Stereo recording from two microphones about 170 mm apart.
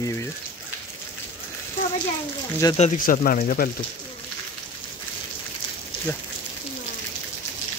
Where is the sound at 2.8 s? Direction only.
55° left (ahead or behind).